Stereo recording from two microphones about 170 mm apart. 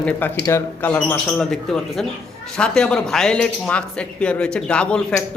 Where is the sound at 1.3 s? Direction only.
Centre (ahead or behind).